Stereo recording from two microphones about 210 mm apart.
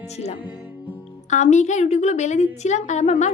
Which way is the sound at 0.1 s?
30° left (ahead or behind).